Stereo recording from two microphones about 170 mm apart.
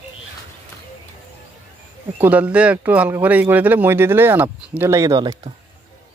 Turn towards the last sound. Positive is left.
turn(degrees=-25)  # may be behind; listen again after turning